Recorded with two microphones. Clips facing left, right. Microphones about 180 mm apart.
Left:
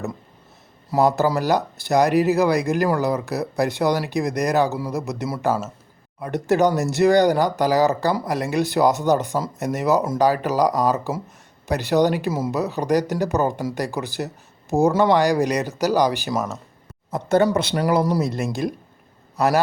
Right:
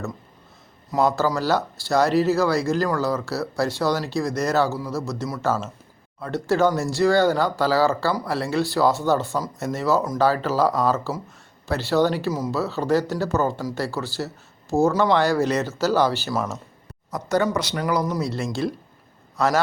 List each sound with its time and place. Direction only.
1.0 s speech: 20° left (ahead or behind)
17.1 s speech: 25° left (ahead or behind)
18.3 s speech: 20° left (ahead or behind)